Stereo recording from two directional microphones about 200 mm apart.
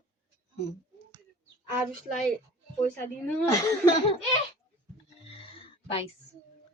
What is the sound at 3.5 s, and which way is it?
Speech, 15° left (ahead or behind).